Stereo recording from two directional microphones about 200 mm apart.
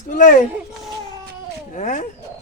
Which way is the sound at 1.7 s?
40° left (ahead or behind).